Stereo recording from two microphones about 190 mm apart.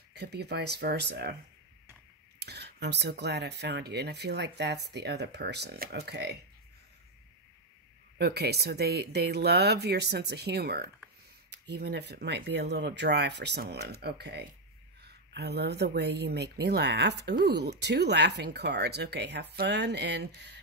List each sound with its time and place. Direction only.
0.1 s speech: 60° right (ahead or behind)
2.3 s speech: 60° right (ahead or behind)
8.2 s speech: 60° right (ahead or behind)